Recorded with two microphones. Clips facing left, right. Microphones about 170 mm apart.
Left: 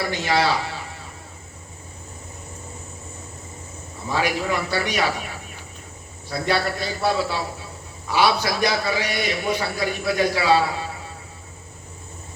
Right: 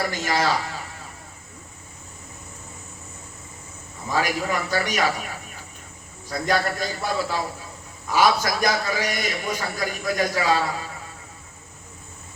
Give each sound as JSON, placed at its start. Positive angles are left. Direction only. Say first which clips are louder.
{"t": 0.1, "sound": "a man's voice", "louder": "left 2 dB", "side_deg": -45}
{"t": 4.1, "sound": "a man's voice", "louder": "left 1 dB", "side_deg": -45}
{"t": 6.3, "sound": "a man's voice", "louder": "left 1 dB", "side_deg": -45}